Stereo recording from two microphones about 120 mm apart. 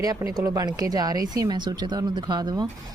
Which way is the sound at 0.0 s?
30° right (ahead or behind).